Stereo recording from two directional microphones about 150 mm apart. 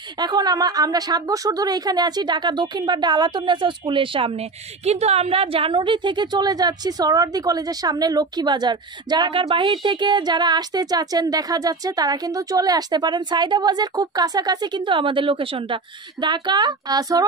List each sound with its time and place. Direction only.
0.2 s a woman's voice: 25° right (ahead or behind)